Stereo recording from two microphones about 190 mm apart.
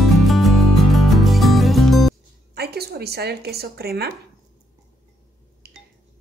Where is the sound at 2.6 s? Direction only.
55° right (ahead or behind).